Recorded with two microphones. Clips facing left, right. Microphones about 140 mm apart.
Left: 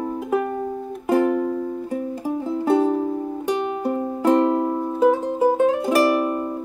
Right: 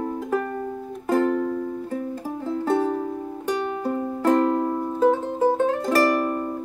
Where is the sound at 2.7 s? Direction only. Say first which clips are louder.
Left 5 dB; 15° left (ahead or behind).